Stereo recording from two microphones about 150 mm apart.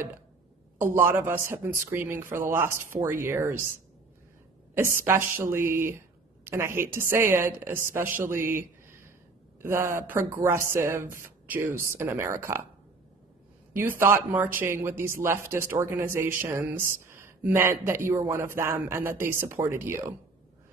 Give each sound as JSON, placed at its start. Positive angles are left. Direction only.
{"t": 0.9, "sound": "speech", "side_deg": -15}
{"t": 4.7, "sound": "a man's voice", "side_deg": -15}
{"t": 13.7, "sound": "speech", "side_deg": -15}